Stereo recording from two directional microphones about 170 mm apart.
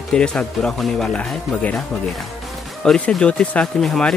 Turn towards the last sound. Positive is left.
turn(degrees=5)  # may be behind; listen again after turning